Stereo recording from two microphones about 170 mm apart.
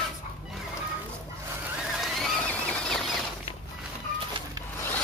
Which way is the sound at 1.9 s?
Centre (ahead or behind).